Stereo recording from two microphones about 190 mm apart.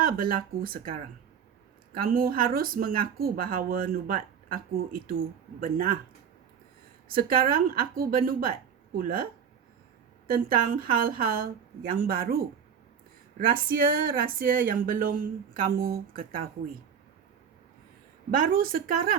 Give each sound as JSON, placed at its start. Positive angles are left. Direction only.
{"t": 0.0, "sound": "speech", "side_deg": -50}
{"t": 2.0, "sound": "speech", "side_deg": -50}
{"t": 7.1, "sound": "speech", "side_deg": -50}
{"t": 10.2, "sound": "speech", "side_deg": -50}
{"t": 18.3, "sound": "speech", "side_deg": -50}